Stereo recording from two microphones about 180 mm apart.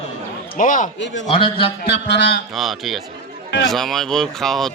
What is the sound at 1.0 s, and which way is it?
Speech, 90° left.